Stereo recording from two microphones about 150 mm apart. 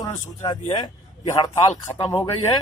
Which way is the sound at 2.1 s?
25° left (ahead or behind).